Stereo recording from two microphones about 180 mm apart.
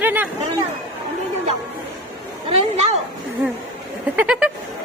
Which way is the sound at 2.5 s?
35° right (ahead or behind).